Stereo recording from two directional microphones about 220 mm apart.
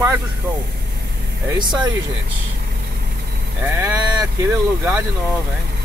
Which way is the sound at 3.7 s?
15° right (ahead or behind).